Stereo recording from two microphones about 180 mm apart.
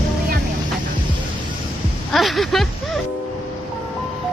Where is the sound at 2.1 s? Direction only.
Centre (ahead or behind).